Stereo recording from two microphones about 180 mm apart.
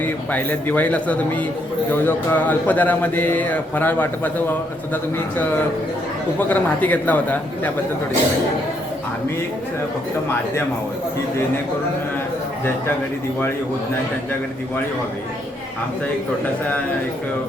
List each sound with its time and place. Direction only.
0.0 s speech: 10° left (ahead or behind)